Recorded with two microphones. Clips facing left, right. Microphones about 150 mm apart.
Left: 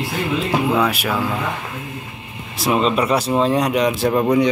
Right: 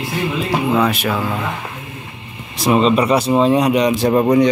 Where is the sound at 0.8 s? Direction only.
5° left (ahead or behind).